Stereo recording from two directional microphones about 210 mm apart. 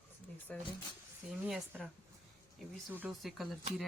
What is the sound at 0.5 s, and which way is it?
Speech, 5° left (ahead or behind).